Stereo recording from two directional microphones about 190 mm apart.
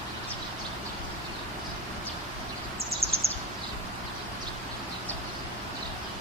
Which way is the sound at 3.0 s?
30° right (ahead or behind).